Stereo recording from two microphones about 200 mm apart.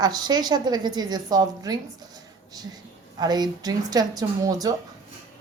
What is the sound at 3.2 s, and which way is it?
Speech, 20° right (ahead or behind).